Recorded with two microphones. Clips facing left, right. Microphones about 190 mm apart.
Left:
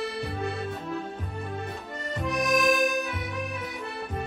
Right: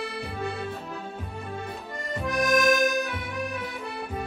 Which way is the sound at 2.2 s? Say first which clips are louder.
Right 2 dB; centre (ahead or behind).